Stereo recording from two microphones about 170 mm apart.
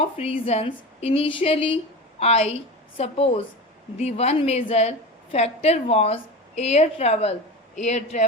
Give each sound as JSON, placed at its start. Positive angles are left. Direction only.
{"t": 0.0, "sound": "a woman's voice", "side_deg": 35}